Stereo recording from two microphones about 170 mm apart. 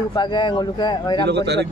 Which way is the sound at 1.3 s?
90° right.